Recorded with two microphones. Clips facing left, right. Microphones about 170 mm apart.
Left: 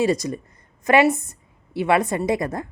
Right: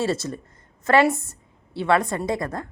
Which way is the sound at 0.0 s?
15° left (ahead or behind).